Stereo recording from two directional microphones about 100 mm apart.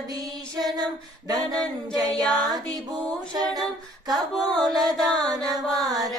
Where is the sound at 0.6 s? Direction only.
40° right (ahead or behind).